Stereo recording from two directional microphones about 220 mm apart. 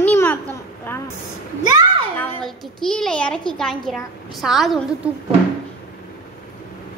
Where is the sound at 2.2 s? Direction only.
5° left (ahead or behind).